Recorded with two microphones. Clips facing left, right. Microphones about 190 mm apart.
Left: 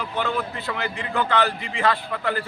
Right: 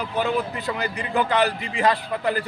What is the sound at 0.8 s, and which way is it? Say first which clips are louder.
A man's voice: right 2 dB; 20° right (ahead or behind).